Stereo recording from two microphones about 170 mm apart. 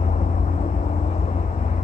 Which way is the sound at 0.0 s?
45° left (ahead or behind).